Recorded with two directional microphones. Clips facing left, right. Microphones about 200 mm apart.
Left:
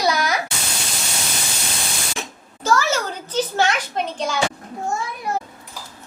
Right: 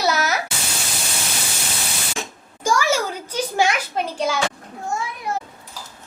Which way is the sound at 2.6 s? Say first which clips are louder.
Even; 10° right (ahead or behind).